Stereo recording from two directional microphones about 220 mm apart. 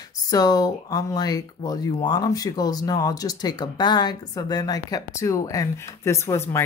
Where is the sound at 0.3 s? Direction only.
15° left (ahead or behind).